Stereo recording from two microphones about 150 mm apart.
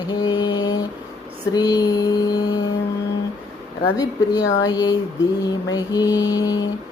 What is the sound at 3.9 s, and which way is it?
Mantra, 25° left (ahead or behind).